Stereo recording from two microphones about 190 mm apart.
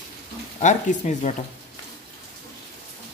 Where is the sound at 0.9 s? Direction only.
40° left (ahead or behind).